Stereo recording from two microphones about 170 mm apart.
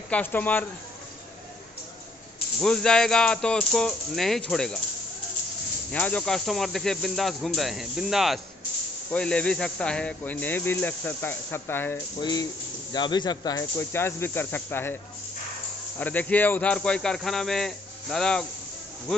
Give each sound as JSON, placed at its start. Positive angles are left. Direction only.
{"t": 0.1, "sound": "speech", "side_deg": 10}
{"t": 2.6, "sound": "speech", "side_deg": 5}
{"t": 5.9, "sound": "speech", "side_deg": 10}
{"t": 12.2, "sound": "speech", "side_deg": 25}
{"t": 16.0, "sound": "speech", "side_deg": 10}